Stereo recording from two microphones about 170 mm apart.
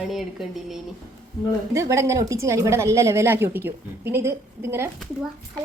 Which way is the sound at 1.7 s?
15° right (ahead or behind).